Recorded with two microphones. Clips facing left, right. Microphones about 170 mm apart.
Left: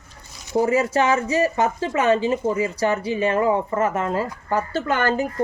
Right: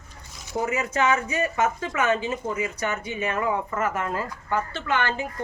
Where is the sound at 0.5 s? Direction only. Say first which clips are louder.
Left 7 dB; 35° left (ahead or behind).